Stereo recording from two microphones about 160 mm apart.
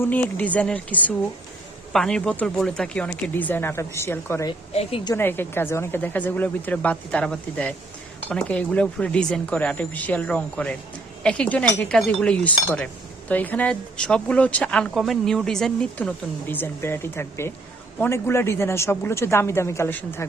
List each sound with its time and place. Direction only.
0.0 s speech: 10° left (ahead or behind)
4.7 s speech: 40° left (ahead or behind)
5.0 s speech: 15° left (ahead or behind)